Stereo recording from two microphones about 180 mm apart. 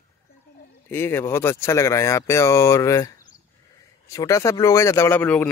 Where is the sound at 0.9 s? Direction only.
15° left (ahead or behind).